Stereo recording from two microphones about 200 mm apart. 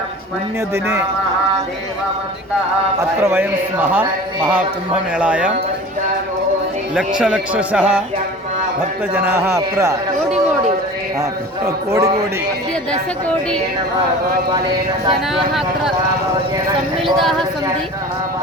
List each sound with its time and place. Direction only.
0.7 s speech: 10° right (ahead or behind)
3.2 s speech: 10° right (ahead or behind)
5.1 s speech: 5° right (ahead or behind)
7.2 s speech: 5° right (ahead or behind)
9.1 s speech: 10° right (ahead or behind)
11.2 s speech: 15° right (ahead or behind)
17.2 s speech: centre (ahead or behind)